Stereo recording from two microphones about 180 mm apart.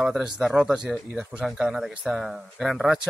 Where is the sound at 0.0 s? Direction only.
5° right (ahead or behind).